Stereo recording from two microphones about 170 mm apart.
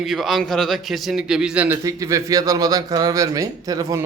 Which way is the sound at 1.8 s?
20° right (ahead or behind).